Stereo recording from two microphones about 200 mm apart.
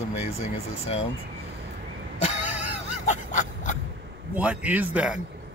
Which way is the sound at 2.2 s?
35° left (ahead or behind).